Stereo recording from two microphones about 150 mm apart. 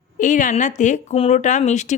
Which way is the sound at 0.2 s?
60° left (ahead or behind).